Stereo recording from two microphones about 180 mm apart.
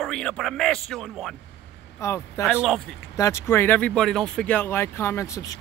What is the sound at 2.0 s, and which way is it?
Speech, 15° left (ahead or behind).